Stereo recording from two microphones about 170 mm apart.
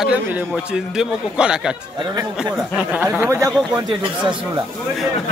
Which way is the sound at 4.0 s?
30° right (ahead or behind).